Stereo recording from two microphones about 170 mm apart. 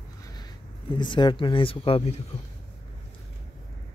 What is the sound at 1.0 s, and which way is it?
Speech, 25° left (ahead or behind).